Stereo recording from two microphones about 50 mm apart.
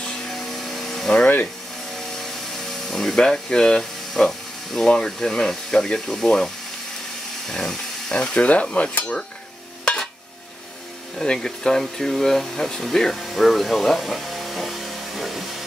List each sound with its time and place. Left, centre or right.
0.3 s vacuum cleaner: centre
2.1 s a sound: centre
4.1 s speech: centre; by 8.6 s left
8.7 s dishes: left
11.1 s speech: centre
13.2 s music: centre